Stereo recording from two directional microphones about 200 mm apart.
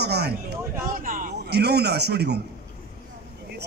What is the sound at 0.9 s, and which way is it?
Speech, 40° right (ahead or behind).